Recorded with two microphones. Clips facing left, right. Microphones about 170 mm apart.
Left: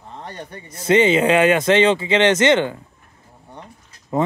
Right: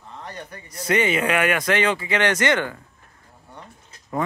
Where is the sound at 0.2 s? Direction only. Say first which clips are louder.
Left 3 dB; 30° left (ahead or behind).